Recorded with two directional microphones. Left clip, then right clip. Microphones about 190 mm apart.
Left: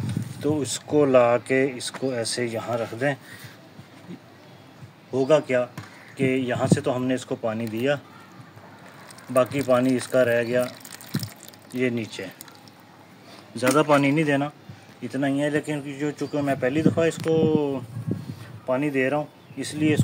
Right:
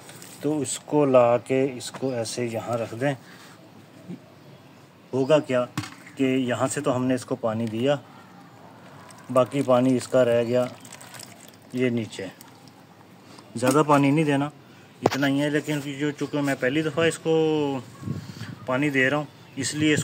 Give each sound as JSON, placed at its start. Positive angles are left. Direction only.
{"t": 0.0, "sound": "speech", "side_deg": 0}
{"t": 5.1, "sound": "speech", "side_deg": 0}
{"t": 9.3, "sound": "speech", "side_deg": -10}
{"t": 11.7, "sound": "speech", "side_deg": -5}
{"t": 13.6, "sound": "speech", "side_deg": -15}